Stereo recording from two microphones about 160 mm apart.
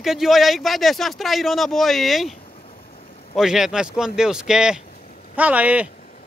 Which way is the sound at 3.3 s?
5° right (ahead or behind).